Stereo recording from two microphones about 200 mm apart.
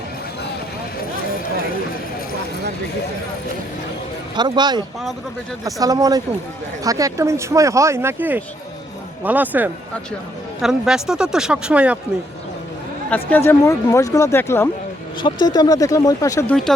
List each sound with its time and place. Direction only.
4.4 s speech: 20° right (ahead or behind); by 11.9 s 5° right (ahead or behind)
13.1 s speech: 10° left (ahead or behind)